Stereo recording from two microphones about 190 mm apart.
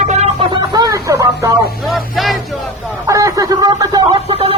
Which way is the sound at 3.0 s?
15° right (ahead or behind).